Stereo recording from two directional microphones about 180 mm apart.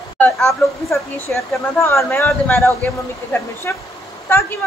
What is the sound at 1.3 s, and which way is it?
A woman's voice, 10° left (ahead or behind).